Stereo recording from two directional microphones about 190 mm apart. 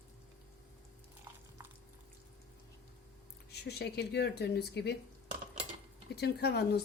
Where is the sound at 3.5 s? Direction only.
60° left (ahead or behind).